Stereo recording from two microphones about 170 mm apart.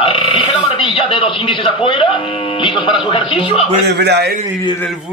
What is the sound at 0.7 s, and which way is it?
Speech, 30° left (ahead or behind).